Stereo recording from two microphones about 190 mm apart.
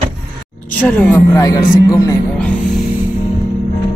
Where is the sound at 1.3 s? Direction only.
15° left (ahead or behind).